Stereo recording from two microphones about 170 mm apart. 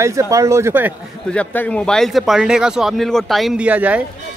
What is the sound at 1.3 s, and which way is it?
Speech, 10° left (ahead or behind).